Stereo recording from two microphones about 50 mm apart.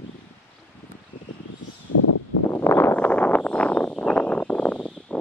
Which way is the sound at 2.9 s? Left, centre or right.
Left.